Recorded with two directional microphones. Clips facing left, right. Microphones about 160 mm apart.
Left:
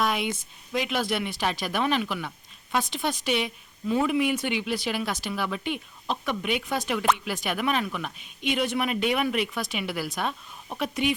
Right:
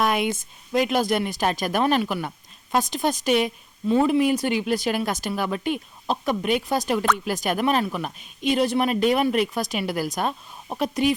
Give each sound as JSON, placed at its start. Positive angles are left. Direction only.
{"t": 0.0, "sound": "speech", "side_deg": -50}
{"t": 3.8, "sound": "speech", "side_deg": -30}